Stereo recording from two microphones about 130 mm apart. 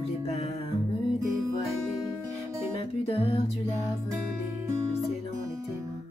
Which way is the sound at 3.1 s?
50° left (ahead or behind).